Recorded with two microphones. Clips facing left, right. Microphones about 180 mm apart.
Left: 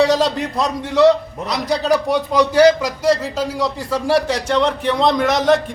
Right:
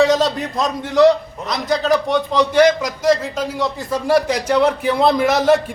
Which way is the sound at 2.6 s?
35° left (ahead or behind).